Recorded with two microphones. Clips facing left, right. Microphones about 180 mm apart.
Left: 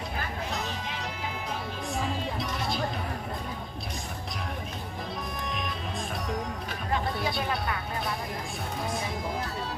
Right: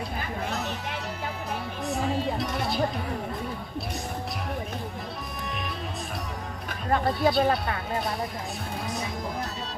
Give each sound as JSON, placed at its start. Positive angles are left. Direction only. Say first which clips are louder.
{"t": 6.9, "sound": "speech", "louder": "right 7 dB", "side_deg": -50}